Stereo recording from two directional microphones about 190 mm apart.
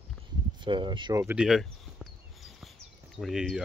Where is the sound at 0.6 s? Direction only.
25° right (ahead or behind).